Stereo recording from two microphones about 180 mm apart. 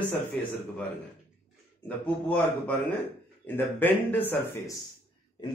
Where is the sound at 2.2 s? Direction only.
10° left (ahead or behind).